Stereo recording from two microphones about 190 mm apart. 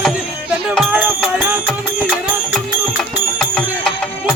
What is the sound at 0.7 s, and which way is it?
Music, 5° right (ahead or behind).